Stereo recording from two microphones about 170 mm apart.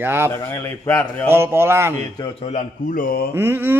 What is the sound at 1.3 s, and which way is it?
Speech, 15° right (ahead or behind).